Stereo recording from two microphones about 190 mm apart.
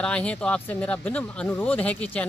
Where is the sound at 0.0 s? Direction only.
5° left (ahead or behind).